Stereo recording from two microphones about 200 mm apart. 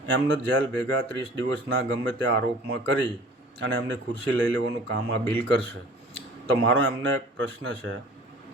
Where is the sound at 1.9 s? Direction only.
65° right (ahead or behind).